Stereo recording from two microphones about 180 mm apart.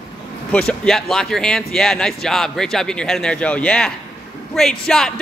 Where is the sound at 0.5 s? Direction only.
5° left (ahead or behind).